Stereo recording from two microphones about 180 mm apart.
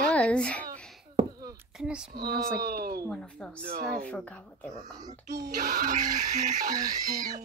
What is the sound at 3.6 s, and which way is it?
Speech, 55° right (ahead or behind).